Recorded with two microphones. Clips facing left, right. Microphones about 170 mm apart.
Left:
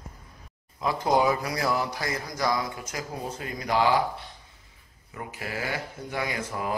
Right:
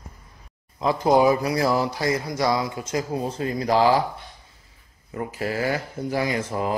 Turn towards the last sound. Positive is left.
turn(degrees=-25)  # may be behind; listen again after turning